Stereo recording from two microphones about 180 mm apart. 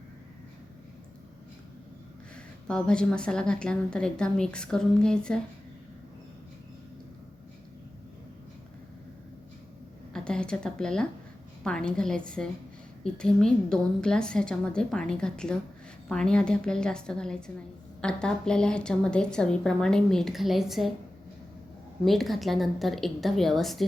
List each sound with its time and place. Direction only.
2.3 s a woman's voice: 5° left (ahead or behind)
10.1 s a woman's voice: 5° left (ahead or behind)
22.0 s a woman's voice: centre (ahead or behind)